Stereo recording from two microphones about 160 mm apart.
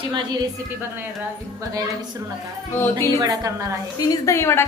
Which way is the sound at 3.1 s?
20° right (ahead or behind).